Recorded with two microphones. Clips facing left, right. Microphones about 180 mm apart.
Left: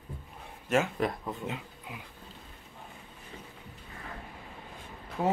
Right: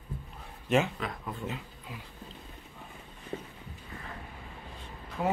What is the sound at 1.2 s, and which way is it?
Speech, 15° left (ahead or behind).